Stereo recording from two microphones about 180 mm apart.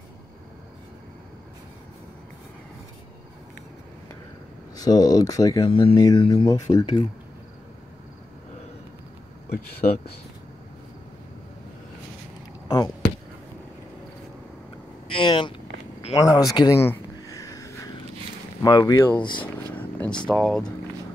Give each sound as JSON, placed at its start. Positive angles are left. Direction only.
{"t": 4.7, "sound": "speech", "side_deg": 20}
{"t": 5.7, "sound": "speech", "side_deg": 30}
{"t": 9.8, "sound": "speech", "side_deg": 40}
{"t": 12.6, "sound": "a sound", "side_deg": 30}
{"t": 15.0, "sound": "speech", "side_deg": 30}
{"t": 16.2, "sound": "a sound", "side_deg": 20}
{"t": 18.6, "sound": "speech", "side_deg": 20}
{"t": 19.4, "sound": "vehicle", "side_deg": 10}